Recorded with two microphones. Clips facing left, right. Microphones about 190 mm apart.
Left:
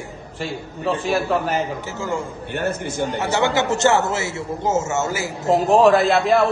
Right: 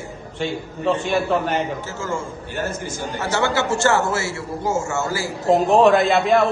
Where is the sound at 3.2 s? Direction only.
15° left (ahead or behind).